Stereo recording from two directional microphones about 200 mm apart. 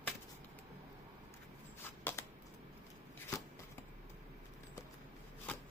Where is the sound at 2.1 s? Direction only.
10° left (ahead or behind).